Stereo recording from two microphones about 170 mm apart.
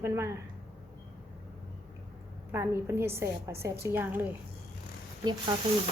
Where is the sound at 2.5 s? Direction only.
15° right (ahead or behind).